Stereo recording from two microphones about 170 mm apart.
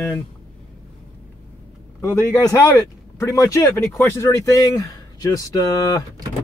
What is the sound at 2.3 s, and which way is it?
Speech, 20° left (ahead or behind).